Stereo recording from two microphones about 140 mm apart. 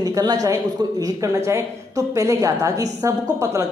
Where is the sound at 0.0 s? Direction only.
30° right (ahead or behind).